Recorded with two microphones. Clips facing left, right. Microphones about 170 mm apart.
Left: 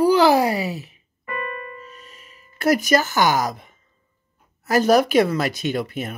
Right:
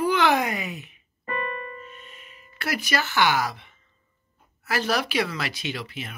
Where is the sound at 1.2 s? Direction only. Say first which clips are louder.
Left 1 dB; 35° right (ahead or behind).